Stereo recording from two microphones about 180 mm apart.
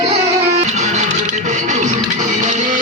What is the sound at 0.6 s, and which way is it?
Music, 40° right (ahead or behind).